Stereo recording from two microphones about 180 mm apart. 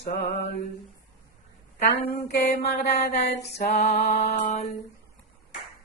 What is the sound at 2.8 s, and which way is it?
Speech, 40° left (ahead or behind).